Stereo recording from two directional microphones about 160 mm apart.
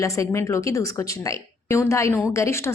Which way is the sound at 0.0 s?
20° left (ahead or behind).